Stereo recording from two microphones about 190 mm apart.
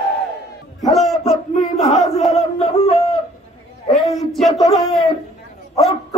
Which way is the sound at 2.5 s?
30° left (ahead or behind).